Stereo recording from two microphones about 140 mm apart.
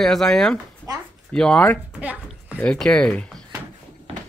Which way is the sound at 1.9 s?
10° right (ahead or behind).